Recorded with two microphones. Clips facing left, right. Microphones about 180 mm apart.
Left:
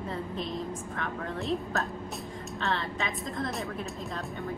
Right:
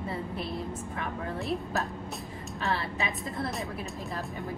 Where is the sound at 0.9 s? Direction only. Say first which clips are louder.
Right 1 dB; centre (ahead or behind).